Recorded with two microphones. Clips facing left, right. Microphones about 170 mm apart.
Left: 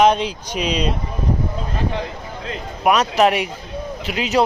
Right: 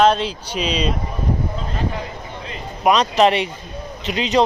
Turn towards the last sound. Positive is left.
turn(degrees=5)  # may be behind; listen again after turning